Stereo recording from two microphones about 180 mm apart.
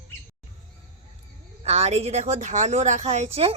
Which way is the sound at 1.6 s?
35° right (ahead or behind).